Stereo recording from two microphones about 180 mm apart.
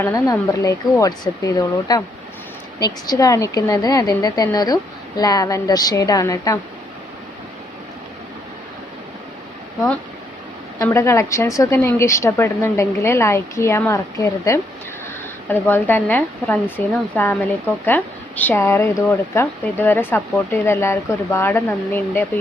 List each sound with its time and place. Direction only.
0.0 s a woman's voice: 15° left (ahead or behind)
10.8 s speech: 15° left (ahead or behind)